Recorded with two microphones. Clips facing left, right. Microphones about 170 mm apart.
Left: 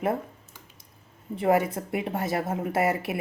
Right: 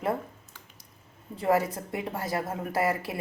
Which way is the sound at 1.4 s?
25° left (ahead or behind).